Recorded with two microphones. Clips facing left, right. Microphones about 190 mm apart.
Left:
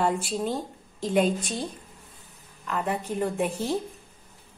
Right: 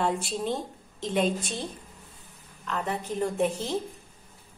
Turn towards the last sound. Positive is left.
turn(degrees=5)  # may be behind; listen again after turning